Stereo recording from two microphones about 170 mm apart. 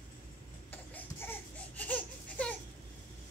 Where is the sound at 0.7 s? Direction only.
10° left (ahead or behind).